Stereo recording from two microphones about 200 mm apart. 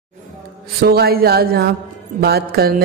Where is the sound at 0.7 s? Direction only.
50° right (ahead or behind).